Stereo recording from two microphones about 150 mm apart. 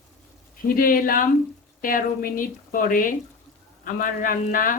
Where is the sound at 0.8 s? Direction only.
70° left (ahead or behind).